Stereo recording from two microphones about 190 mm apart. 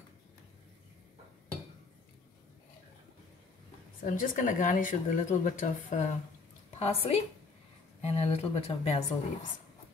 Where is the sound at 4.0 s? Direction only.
45° left (ahead or behind).